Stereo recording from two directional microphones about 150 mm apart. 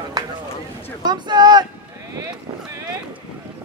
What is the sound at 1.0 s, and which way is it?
Speech, 30° right (ahead or behind).